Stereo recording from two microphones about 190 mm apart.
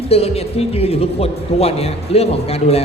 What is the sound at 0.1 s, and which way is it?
Speech, 30° left (ahead or behind).